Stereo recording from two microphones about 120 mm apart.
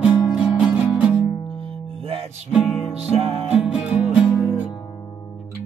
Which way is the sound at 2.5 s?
Centre (ahead or behind).